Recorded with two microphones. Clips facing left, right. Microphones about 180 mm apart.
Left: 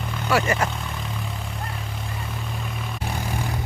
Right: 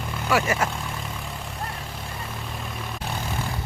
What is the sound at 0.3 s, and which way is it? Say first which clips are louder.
Speech: left 1 dB; 5° right (ahead or behind).